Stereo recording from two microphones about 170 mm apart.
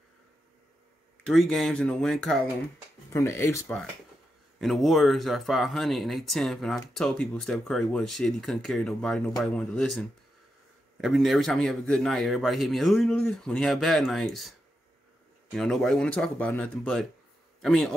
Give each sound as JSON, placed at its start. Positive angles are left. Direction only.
{"t": 1.2, "sound": "speech", "side_deg": 0}
{"t": 3.1, "sound": "speech", "side_deg": 15}
{"t": 4.6, "sound": "speech", "side_deg": 0}
{"t": 15.5, "sound": "a man's voice", "side_deg": 0}